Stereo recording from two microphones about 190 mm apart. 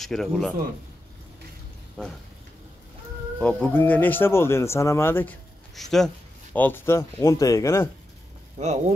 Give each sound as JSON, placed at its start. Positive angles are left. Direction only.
{"t": 0.0, "sound": "a man's voice", "side_deg": 0}
{"t": 2.0, "sound": "speech", "side_deg": 5}
{"t": 3.3, "sound": "speech", "side_deg": 10}
{"t": 8.5, "sound": "speech", "side_deg": -35}